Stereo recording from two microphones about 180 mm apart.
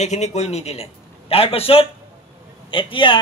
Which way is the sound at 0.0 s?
40° left (ahead or behind).